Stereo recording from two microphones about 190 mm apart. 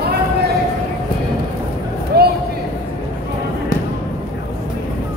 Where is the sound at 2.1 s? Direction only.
60° right (ahead or behind).